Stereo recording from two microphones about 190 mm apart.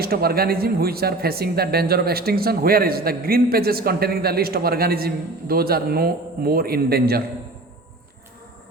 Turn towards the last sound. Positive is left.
turn(degrees=-55)  # may be behind; listen again after turning